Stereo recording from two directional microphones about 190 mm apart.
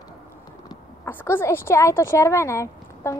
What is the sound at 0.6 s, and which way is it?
Speech, 15° left (ahead or behind).